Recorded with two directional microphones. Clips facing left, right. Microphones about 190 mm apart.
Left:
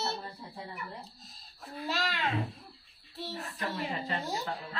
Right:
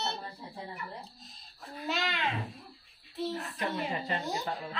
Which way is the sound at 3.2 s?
Centre (ahead or behind).